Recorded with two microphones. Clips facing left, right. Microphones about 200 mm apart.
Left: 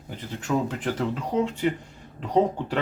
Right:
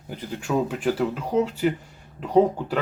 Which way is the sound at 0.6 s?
10° right (ahead or behind).